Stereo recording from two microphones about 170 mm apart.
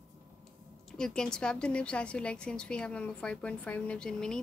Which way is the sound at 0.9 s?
5° left (ahead or behind).